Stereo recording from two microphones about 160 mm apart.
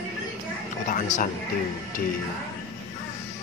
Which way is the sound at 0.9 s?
55° left (ahead or behind).